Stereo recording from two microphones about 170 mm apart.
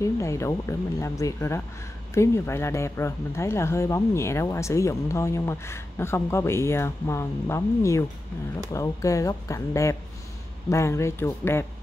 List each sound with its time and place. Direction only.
0.0 s speech: 15° left (ahead or behind)